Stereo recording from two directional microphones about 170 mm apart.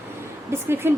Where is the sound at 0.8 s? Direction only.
15° right (ahead or behind).